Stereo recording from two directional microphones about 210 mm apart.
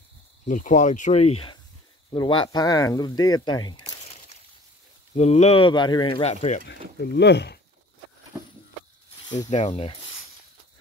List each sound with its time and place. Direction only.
0.5 s speech: 35° left (ahead or behind)
2.1 s speech: 25° left (ahead or behind)
5.1 s speech: 30° left (ahead or behind)
6.7 s speech: 50° left (ahead or behind)
9.5 s ratchet: 30° left (ahead or behind)